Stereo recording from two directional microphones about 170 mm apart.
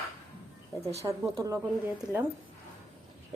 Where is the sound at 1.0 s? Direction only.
15° right (ahead or behind).